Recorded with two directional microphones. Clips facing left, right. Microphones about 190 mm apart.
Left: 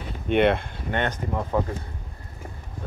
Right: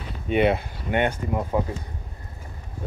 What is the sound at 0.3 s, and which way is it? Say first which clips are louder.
Speech: left 1 dB; 5° right (ahead or behind).